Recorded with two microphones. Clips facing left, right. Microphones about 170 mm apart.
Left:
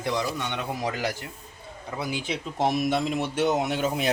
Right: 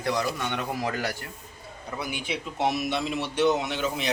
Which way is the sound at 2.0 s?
35° left (ahead or behind).